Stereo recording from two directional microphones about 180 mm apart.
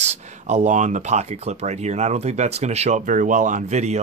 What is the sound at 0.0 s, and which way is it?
Speech, 35° right (ahead or behind).